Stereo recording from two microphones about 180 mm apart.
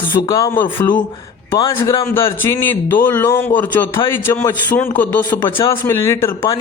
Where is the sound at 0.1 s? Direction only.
20° left (ahead or behind).